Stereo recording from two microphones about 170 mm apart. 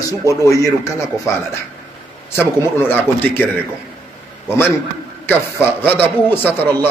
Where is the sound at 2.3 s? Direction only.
15° left (ahead or behind).